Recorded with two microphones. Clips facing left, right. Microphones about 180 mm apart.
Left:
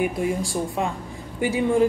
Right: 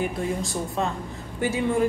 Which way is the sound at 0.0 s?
10° left (ahead or behind).